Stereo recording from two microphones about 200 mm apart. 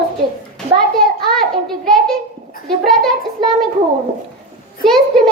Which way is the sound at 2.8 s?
Centre (ahead or behind).